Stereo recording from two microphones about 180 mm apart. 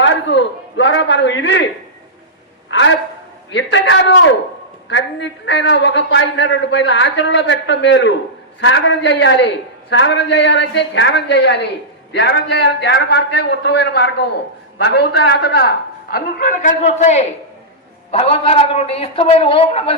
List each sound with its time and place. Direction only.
0.0 s a woman's voice: 85° left
2.6 s a woman's voice: 90° left; by 20.0 s 30° left (ahead or behind)